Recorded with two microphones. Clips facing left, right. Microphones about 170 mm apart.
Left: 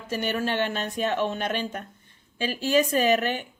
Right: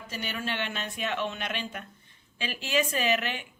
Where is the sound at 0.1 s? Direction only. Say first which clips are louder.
Left 8 dB; 45° left (ahead or behind).